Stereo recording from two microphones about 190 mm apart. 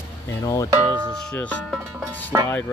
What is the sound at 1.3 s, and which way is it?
Speech, 5° left (ahead or behind).